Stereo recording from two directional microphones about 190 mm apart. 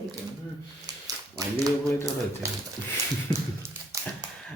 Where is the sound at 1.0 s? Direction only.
20° right (ahead or behind).